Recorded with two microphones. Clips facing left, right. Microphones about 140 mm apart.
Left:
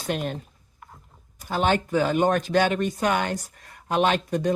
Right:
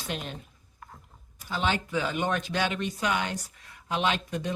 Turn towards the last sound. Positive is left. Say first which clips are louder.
# left 6 dB
turn(degrees=45)  # may be behind; listen again after turning